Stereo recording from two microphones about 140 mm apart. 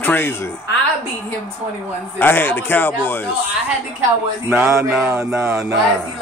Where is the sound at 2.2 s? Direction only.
15° left (ahead or behind).